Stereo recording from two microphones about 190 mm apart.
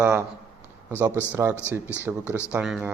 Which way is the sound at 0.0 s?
15° right (ahead or behind).